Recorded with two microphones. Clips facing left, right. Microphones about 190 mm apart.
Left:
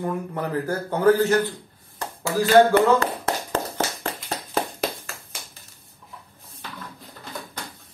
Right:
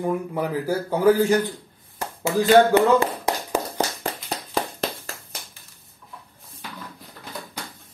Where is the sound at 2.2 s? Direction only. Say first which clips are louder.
Even; 20° right (ahead or behind).